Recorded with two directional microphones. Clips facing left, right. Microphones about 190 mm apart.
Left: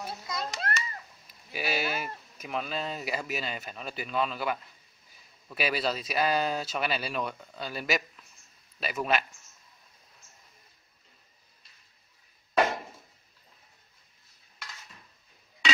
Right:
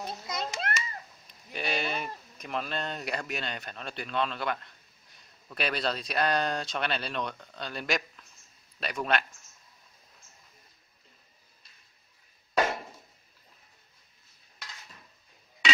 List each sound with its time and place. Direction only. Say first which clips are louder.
0.0 s a child's voice: right 1 dB; 20° right (ahead or behind)
1.2 s sheep: left 1 dB; 5° left (ahead or behind)
2.3 s speech: left 1 dB; 5° left (ahead or behind)